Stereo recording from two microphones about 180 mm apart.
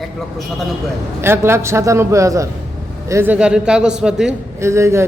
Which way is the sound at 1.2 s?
15° right (ahead or behind).